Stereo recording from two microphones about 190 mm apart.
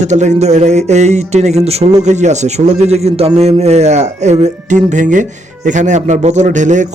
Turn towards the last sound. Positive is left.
turn(degrees=-40)  # may be behind; listen again after turning